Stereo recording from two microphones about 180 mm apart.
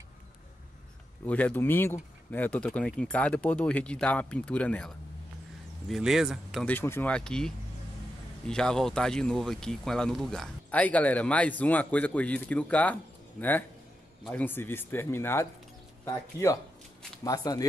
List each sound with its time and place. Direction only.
1.2 s speech: 10° left (ahead or behind)
6.7 s speech: 10° left (ahead or behind)